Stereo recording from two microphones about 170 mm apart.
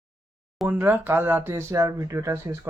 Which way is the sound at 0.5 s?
10° right (ahead or behind).